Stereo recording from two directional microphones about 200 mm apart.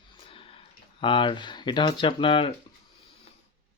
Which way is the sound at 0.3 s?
25° left (ahead or behind).